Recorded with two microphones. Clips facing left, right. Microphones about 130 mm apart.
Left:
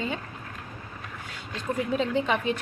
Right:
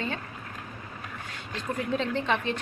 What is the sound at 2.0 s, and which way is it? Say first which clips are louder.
Speech: left 2 dB; 10° left (ahead or behind).